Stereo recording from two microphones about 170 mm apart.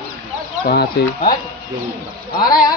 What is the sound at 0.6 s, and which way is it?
Speech, 70° left (ahead or behind).